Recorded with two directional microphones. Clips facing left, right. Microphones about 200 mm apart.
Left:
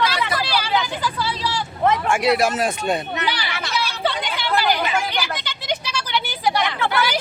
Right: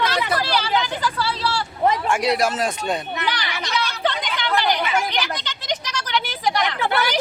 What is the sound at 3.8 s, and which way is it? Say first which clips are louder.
Chatter: even; 10° left (ahead or behind).